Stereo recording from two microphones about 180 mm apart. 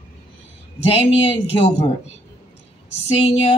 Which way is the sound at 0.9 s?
35° left (ahead or behind).